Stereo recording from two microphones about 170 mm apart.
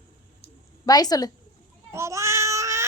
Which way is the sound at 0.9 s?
20° left (ahead or behind).